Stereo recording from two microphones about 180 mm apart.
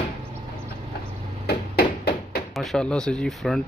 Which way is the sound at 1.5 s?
55° left (ahead or behind).